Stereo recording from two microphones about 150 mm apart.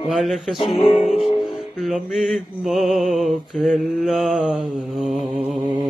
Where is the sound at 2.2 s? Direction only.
Centre (ahead or behind).